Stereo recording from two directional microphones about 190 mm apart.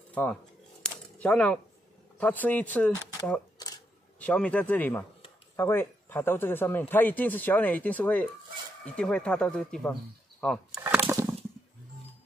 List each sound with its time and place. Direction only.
0.1 s speech: 5° left (ahead or behind)
0.8 s a sound: 5° left (ahead or behind)
2.1 s speech: 10° left (ahead or behind)
3.5 s camera: 20° left (ahead or behind)
4.2 s speech: 5° left (ahead or behind)
10.8 s a sound: 10° right (ahead or behind)